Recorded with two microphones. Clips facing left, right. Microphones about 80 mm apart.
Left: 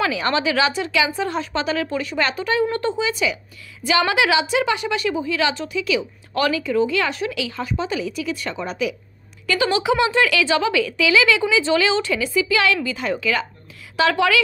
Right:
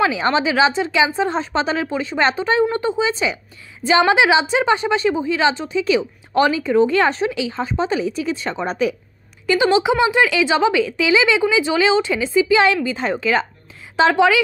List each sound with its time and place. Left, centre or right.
0.0 s a woman's voice: right
3.1 s a woman's voice: right
9.5 s a woman's voice: right